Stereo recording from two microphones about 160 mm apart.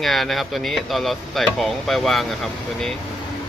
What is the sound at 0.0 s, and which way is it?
Speech, centre (ahead or behind).